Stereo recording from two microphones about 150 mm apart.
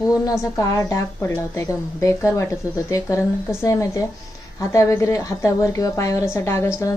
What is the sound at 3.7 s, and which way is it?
A woman's voice, 20° left (ahead or behind).